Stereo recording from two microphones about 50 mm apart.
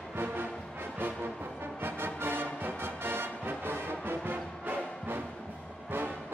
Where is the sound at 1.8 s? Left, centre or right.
Right.